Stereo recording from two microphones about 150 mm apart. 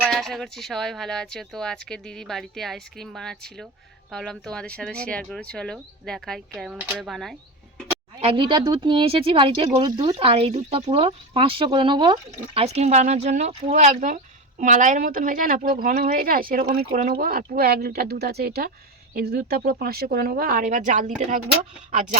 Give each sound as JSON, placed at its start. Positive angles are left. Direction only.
{"t": 0.0, "sound": "speech", "side_deg": 0}
{"t": 7.1, "sound": "speech", "side_deg": 0}
{"t": 8.2, "sound": "speech", "side_deg": -35}
{"t": 12.3, "sound": "speech", "side_deg": -45}